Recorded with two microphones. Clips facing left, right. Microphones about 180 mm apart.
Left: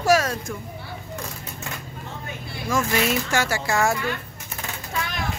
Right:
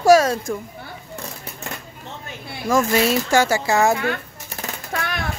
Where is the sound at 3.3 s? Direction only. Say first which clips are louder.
Right 6 dB; 25° right (ahead or behind).